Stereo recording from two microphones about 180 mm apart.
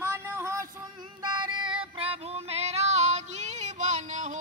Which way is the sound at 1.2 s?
25° right (ahead or behind).